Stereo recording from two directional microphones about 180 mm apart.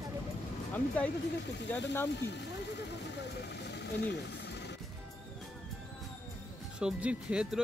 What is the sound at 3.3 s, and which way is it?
Vehicle, 70° left (ahead or behind).